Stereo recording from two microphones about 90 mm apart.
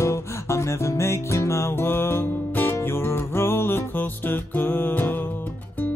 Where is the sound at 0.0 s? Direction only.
30° left (ahead or behind).